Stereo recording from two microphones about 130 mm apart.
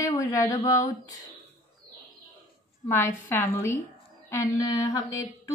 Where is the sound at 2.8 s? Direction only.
20° left (ahead or behind).